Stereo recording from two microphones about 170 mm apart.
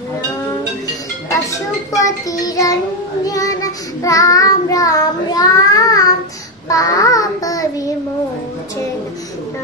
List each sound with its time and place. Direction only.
1.4 s child singing: 20° left (ahead or behind)